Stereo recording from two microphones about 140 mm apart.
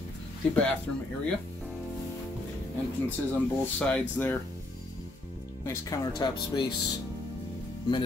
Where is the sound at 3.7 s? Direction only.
10° left (ahead or behind).